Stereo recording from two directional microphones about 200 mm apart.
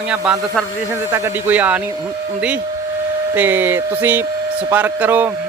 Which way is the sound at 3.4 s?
10° right (ahead or behind).